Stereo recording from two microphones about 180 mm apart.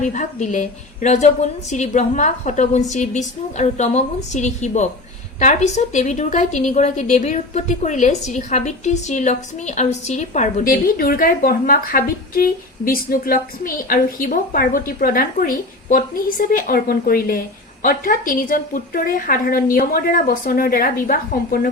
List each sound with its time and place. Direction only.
0.0 s a woman's voice: 40° left (ahead or behind)